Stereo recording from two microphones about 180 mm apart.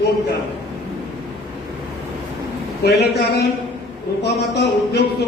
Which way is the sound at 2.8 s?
65° left (ahead or behind).